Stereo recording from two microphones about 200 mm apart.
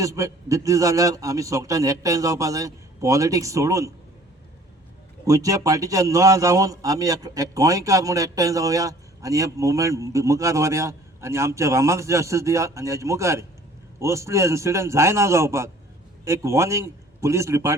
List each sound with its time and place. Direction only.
0.0 s a man's voice: 15° right (ahead or behind)
5.2 s a man's voice: 15° right (ahead or behind)